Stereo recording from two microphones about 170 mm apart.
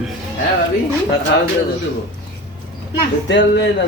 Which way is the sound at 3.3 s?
90° left.